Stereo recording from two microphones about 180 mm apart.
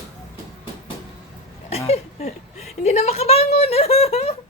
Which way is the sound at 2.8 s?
35° left (ahead or behind).